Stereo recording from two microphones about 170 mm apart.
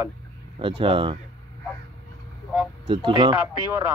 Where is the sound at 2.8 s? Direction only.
30° right (ahead or behind).